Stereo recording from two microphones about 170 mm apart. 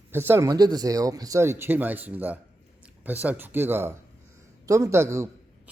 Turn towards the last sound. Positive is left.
turn(degrees=-15)  # may be behind; listen again after turning